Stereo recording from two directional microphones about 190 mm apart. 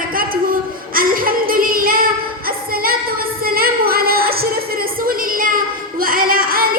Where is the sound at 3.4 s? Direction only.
50° right (ahead or behind).